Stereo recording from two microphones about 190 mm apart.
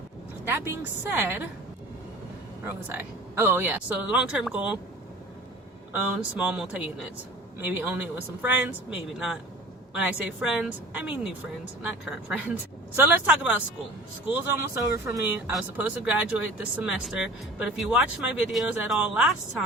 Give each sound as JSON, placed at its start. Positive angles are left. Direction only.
{"t": 0.4, "sound": "speech", "side_deg": -10}
{"t": 2.6, "sound": "speech", "side_deg": -10}
{"t": 5.9, "sound": "speech", "side_deg": -5}
{"t": 13.0, "sound": "speech", "side_deg": -10}
{"t": 14.9, "sound": "speech", "side_deg": -10}